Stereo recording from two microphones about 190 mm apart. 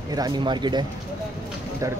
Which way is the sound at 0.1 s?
20° right (ahead or behind).